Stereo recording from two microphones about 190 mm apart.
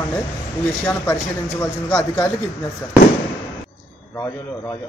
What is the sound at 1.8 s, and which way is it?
Speech, 5° left (ahead or behind).